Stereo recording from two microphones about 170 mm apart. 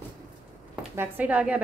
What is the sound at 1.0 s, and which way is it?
Speech, 10° right (ahead or behind).